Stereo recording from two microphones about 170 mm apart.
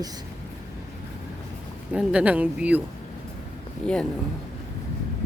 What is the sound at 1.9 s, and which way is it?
Speech, 5° right (ahead or behind).